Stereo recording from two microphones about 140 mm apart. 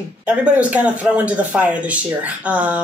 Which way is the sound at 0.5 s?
10° right (ahead or behind).